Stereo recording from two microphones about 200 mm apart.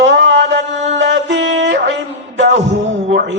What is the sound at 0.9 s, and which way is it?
Music, 60° right (ahead or behind).